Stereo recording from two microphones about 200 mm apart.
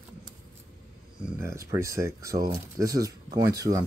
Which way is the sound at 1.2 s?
15° right (ahead or behind).